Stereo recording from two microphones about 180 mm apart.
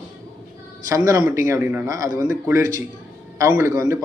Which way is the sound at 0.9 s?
20° right (ahead or behind).